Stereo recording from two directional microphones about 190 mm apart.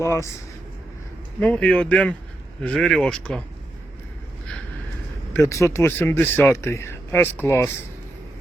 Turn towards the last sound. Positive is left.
turn(degrees=15)  # may be behind; listen again after turning